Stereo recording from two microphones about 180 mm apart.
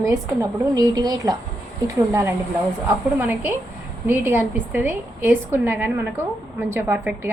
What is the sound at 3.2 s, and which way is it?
A woman's voice, 10° right (ahead or behind).